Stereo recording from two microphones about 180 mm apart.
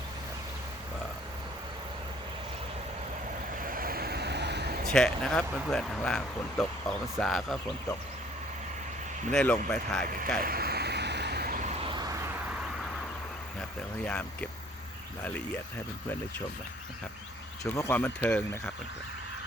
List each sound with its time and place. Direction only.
3.6 s vehicle: 50° right (ahead or behind); by 4.8 s 65° right (ahead or behind)
4.9 s speech: 5° left (ahead or behind)
9.3 s speech: 5° left (ahead or behind)
10.4 s vehicle: 55° right (ahead or behind); by 12.2 s 20° right (ahead or behind)
13.6 s speech: 5° left (ahead or behind)
17.6 s speech: 15° left (ahead or behind)